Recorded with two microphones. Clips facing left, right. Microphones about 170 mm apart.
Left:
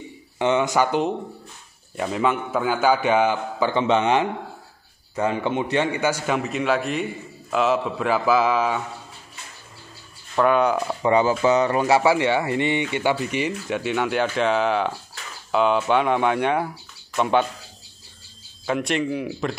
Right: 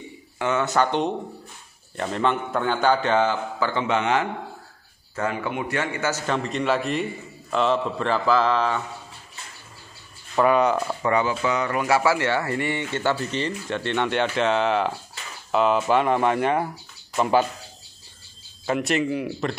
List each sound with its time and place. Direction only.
0.4 s speech: 20° left (ahead or behind)
10.3 s speech: centre (ahead or behind)
11.0 s speech: 25° left (ahead or behind); by 17.5 s 5° right (ahead or behind)
18.7 s speech: centre (ahead or behind)